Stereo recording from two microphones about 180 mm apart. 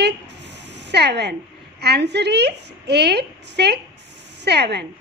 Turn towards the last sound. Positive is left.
turn(degrees=-70)  # may be behind; listen again after turning